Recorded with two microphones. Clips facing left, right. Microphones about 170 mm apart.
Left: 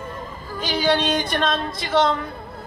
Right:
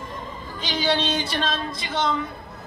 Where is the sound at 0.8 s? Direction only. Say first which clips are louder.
Left 3 dB; 45° left (ahead or behind).